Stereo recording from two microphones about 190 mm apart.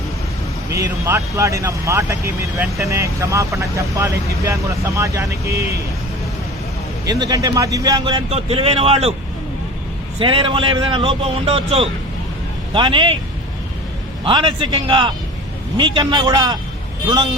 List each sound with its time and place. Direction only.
0.7 s speech: 15° right (ahead or behind)
7.1 s speech: 20° right (ahead or behind)
10.2 s speech: 30° right (ahead or behind)
14.3 s speech: 25° right (ahead or behind)